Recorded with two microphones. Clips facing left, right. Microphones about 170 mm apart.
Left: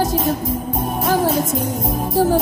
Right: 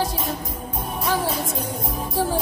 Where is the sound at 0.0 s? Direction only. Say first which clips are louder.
Left 7 dB; 45° left (ahead or behind).